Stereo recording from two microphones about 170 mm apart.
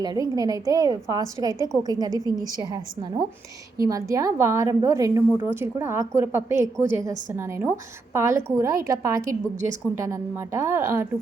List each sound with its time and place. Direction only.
0.0 s a woman's voice: 20° right (ahead or behind)